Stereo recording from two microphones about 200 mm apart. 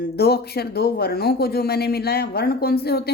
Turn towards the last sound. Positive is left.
turn(degrees=55)  # may be behind; listen again after turning